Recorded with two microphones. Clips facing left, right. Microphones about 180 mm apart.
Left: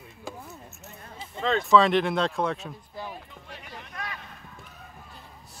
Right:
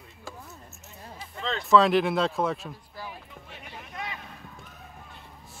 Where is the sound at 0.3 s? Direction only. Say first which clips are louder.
Left 4 dB; 20° left (ahead or behind).